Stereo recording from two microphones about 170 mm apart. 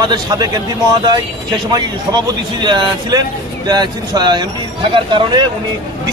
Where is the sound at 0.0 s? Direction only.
25° right (ahead or behind).